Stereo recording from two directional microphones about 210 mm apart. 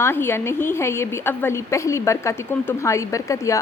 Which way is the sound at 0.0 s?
10° left (ahead or behind).